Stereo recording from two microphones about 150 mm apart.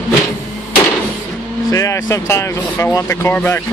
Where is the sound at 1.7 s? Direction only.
20° left (ahead or behind).